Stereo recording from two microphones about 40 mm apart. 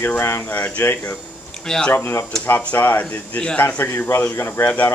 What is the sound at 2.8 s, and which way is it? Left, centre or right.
Speech, left.